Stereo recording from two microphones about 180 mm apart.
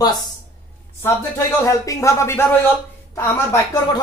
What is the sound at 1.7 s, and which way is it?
A woman's voice, 15° left (ahead or behind).